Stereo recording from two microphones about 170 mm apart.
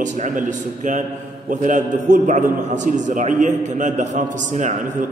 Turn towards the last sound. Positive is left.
turn(degrees=-50)  # may be behind; listen again after turning